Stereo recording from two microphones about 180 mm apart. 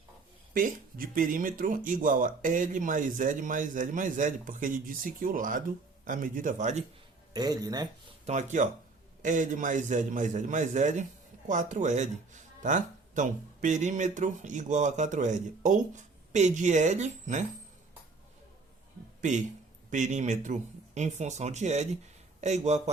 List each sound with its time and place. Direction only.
0.5 s speech: 50° right (ahead or behind)
7.3 s speech: 20° right (ahead or behind)
8.3 s speech: 40° right (ahead or behind)
19.2 s speech: 45° right (ahead or behind)